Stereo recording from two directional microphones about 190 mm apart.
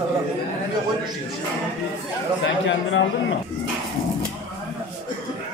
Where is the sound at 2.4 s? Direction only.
75° left (ahead or behind).